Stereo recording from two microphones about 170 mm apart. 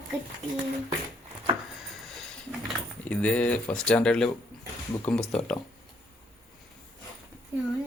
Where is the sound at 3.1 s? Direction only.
10° left (ahead or behind).